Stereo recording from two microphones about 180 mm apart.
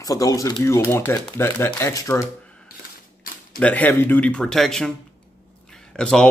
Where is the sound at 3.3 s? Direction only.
50° left (ahead or behind).